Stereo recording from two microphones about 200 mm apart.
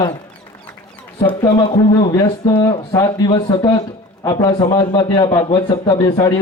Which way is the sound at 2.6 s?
20° left (ahead or behind).